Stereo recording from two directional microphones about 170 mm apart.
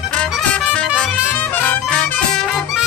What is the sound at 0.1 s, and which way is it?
Music, 5° left (ahead or behind).